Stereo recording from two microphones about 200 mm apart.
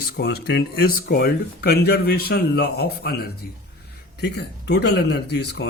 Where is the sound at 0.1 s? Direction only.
55° left (ahead or behind).